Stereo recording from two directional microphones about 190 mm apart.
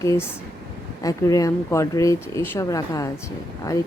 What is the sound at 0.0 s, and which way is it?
Speech, 15° left (ahead or behind).